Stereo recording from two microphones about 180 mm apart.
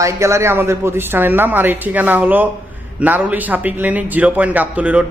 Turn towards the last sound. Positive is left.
turn(degrees=-5)  # may be behind; listen again after turning